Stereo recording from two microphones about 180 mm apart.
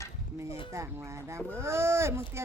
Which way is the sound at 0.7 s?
15° right (ahead or behind).